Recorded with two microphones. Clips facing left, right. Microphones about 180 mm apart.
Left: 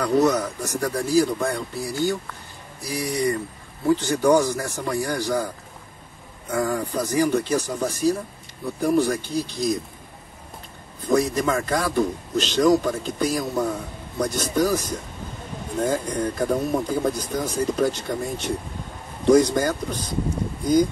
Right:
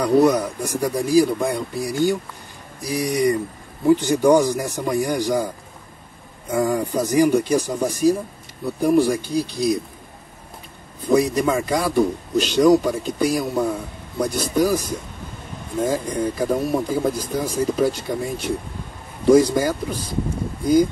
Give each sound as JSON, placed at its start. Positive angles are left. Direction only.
{"t": 0.0, "sound": "a man's voice", "side_deg": -15}
{"t": 6.5, "sound": "a man's voice", "side_deg": -15}
{"t": 11.0, "sound": "a man's voice", "side_deg": -10}